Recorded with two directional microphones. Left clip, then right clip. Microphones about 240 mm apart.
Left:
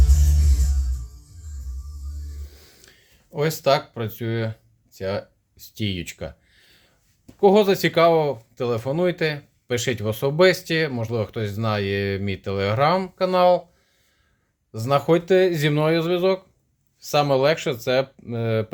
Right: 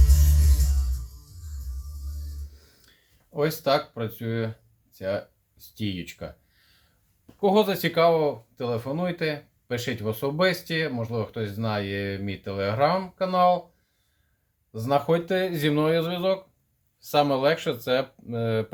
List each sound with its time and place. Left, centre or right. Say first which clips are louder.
2.5 s music: left 8 dB; left
3.3 s speech: left 3 dB; left
14.7 s speech: left 4 dB; left